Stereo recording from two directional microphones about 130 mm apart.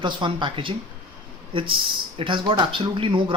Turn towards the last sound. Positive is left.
turn(degrees=-40)  # may be behind; listen again after turning